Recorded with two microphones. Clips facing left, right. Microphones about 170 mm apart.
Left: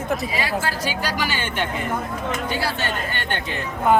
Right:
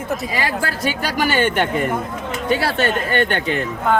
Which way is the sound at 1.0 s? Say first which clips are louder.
Right 11 dB; 55° right (ahead or behind).